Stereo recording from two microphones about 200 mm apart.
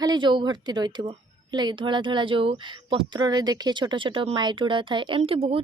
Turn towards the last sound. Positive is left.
turn(degrees=-30)  # may be behind; listen again after turning